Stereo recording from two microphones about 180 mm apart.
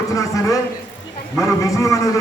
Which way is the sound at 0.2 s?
15° left (ahead or behind).